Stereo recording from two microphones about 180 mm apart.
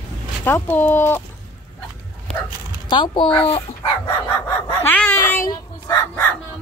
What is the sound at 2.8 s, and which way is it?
Speech, 25° left (ahead or behind).